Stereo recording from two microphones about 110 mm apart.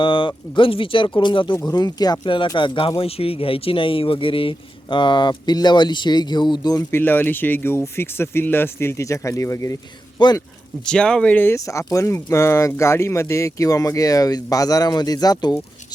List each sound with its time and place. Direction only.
0.0 s speech: 45° left (ahead or behind)
3.0 s speech: 60° left (ahead or behind); by 6.8 s 40° left (ahead or behind)
6.9 s speech: 20° left (ahead or behind)
10.2 s speech: 45° left (ahead or behind)
10.8 s speech: 10° left (ahead or behind); by 15.6 s 40° left (ahead or behind)